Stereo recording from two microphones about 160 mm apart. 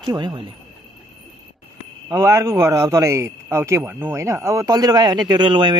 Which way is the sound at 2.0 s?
20° right (ahead or behind).